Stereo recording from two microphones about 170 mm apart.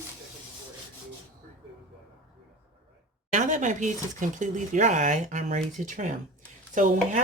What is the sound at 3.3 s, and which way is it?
Speech, 45° right (ahead or behind).